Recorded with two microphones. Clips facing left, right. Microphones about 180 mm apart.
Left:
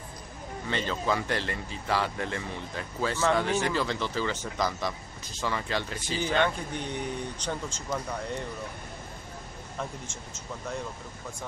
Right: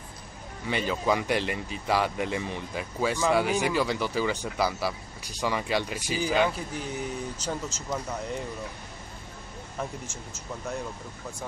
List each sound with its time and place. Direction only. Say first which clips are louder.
0.7 s speech: right 3 dB; 10° right (ahead or behind)
9.8 s speech: right 2 dB; 5° right (ahead or behind)